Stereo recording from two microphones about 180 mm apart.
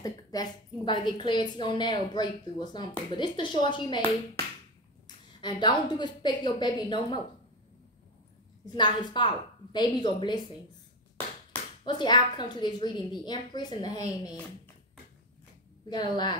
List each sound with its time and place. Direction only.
0.0 s a woman's voice: 20° left (ahead or behind)
5.0 s a woman's voice: 25° left (ahead or behind)
8.6 s a woman's voice: 25° left (ahead or behind)
11.8 s a woman's voice: 25° left (ahead or behind)
15.9 s a woman's voice: 25° left (ahead or behind)